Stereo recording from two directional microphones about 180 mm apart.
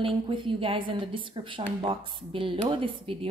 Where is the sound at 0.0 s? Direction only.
30° right (ahead or behind).